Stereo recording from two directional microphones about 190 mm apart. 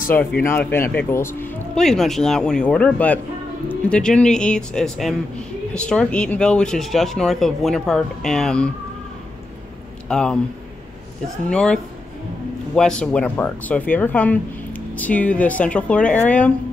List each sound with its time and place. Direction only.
0.4 s speech: 15° left (ahead or behind)
10.0 s speech: 5° left (ahead or behind)
11.4 s speech: 5° left (ahead or behind)